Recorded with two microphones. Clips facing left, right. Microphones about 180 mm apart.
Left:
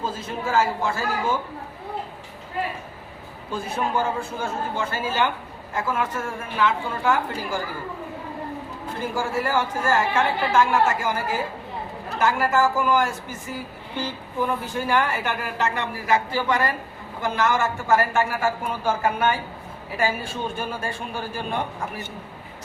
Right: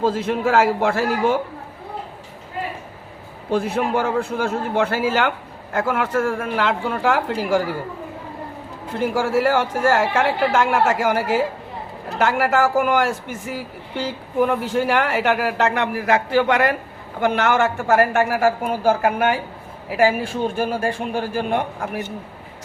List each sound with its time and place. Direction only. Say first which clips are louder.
0.0 s a woman's voice: right 9 dB; 75° right (ahead or behind)
3.5 s a woman's voice: right 6 dB; 65° right (ahead or behind)
9.0 s a woman's voice: right 7 dB; 75° right (ahead or behind)
14.4 s a woman's voice: right 6 dB; 70° right (ahead or behind)
20.6 s a woman's voice: right 8 dB; 60° right (ahead or behind)